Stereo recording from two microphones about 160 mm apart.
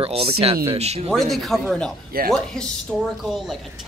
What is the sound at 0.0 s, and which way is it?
Speech, 35° right (ahead or behind).